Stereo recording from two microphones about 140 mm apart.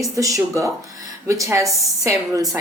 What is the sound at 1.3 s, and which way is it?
A woman's voice, 20° right (ahead or behind).